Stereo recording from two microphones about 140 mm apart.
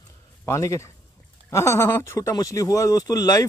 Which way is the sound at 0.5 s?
20° left (ahead or behind).